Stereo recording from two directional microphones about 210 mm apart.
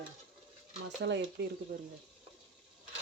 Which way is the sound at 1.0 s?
55° right (ahead or behind).